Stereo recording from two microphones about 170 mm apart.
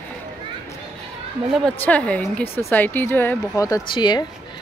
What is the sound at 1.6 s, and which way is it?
Speech, 5° left (ahead or behind).